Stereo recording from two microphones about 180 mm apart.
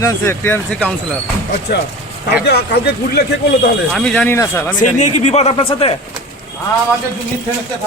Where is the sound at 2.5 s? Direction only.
65° left (ahead or behind).